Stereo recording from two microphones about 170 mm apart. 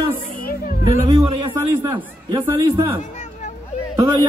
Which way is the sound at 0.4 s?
60° left (ahead or behind).